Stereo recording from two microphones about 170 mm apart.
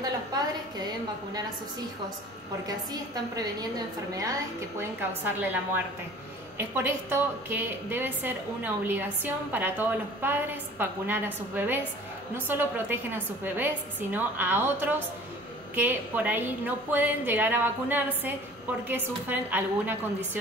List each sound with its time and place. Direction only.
0.0 s a sound: 25° right (ahead or behind)
4.1 s a woman's voice: 20° right (ahead or behind)
6.7 s a woman's voice: 15° right (ahead or behind)